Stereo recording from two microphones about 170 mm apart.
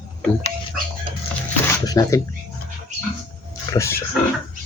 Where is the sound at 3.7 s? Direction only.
15° left (ahead or behind).